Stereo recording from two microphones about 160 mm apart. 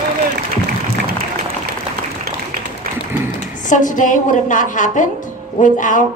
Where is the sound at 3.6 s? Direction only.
55° left (ahead or behind).